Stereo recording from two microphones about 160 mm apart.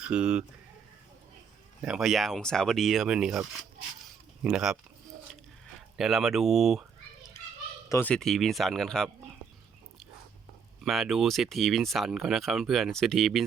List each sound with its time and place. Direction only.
0.0 s speech: 5° right (ahead or behind)
1.8 s speech: 5° right (ahead or behind)
4.4 s speech: 5° right (ahead or behind)
6.0 s speech: centre (ahead or behind)
7.3 s children playing: 15° left (ahead or behind)
7.9 s speech: 15° left (ahead or behind)
8.1 s speech: centre (ahead or behind)
10.8 s speech: centre (ahead or behind)